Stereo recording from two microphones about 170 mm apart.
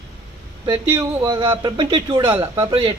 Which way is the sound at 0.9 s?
15° right (ahead or behind).